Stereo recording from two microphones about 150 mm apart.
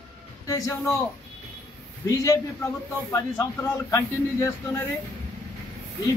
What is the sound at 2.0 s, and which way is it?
Speech, 20° left (ahead or behind).